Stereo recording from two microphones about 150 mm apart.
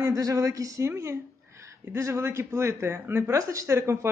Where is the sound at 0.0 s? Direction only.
25° right (ahead or behind).